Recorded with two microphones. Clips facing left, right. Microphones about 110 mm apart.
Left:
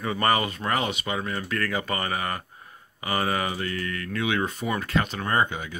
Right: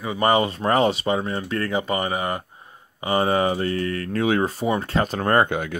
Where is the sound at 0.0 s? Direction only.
15° right (ahead or behind).